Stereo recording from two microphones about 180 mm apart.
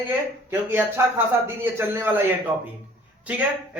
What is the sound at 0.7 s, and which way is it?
A man's voice, 10° right (ahead or behind).